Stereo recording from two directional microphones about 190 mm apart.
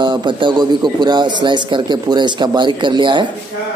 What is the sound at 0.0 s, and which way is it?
A man's voice, 25° right (ahead or behind).